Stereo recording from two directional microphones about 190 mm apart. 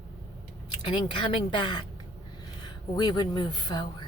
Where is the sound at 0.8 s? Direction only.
25° left (ahead or behind).